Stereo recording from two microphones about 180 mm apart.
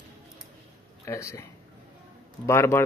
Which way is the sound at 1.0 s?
15° left (ahead or behind).